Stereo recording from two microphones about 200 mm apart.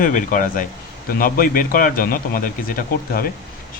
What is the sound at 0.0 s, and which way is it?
A man's voice, 40° left (ahead or behind).